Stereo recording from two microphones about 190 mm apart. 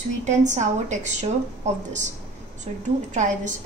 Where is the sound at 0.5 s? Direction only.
40° right (ahead or behind).